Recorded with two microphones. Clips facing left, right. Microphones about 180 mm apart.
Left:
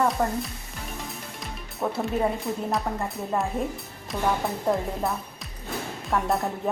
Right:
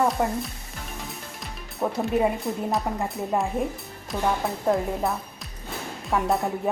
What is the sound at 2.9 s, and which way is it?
Speech, 10° right (ahead or behind).